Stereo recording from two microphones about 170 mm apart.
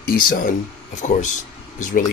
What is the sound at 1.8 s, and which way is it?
Speech, 50° left (ahead or behind).